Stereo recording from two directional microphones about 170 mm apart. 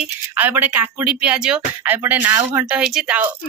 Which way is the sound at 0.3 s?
10° right (ahead or behind).